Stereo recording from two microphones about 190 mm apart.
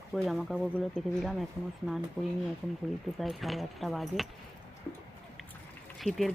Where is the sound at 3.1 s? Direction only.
Centre (ahead or behind).